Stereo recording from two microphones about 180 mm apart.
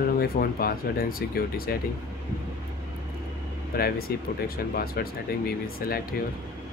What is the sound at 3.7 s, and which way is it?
Speech, 55° left (ahead or behind).